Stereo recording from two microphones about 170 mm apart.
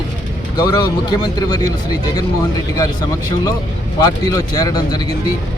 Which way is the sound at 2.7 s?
20° left (ahead or behind).